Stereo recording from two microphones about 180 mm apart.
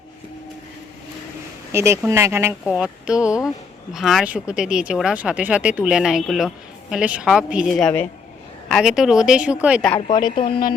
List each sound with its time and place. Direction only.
1.7 s speech: 15° right (ahead or behind)
10.3 s speech: 30° left (ahead or behind)